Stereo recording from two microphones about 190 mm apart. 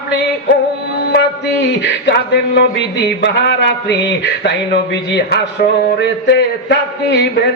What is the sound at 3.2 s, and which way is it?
A man's voice, 65° left (ahead or behind).